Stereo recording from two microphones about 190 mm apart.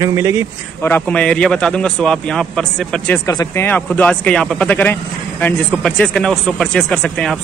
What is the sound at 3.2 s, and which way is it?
Speech, 15° left (ahead or behind).